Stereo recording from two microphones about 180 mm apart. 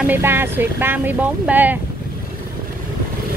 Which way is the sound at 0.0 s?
10° right (ahead or behind).